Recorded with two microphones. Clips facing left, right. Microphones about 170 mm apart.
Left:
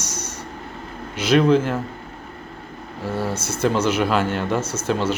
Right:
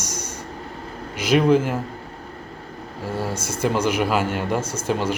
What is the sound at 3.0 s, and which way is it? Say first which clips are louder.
Speech: left 2 dB; 10° right (ahead or behind).